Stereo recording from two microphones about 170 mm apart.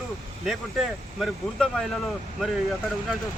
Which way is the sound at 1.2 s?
5° left (ahead or behind).